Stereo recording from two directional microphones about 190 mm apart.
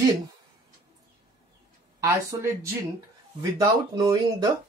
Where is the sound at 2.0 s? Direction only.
15° right (ahead or behind).